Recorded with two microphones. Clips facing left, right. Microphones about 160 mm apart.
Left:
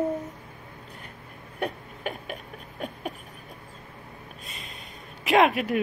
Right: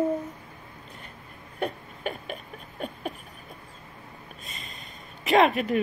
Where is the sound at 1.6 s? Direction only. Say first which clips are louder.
Even; 10° left (ahead or behind).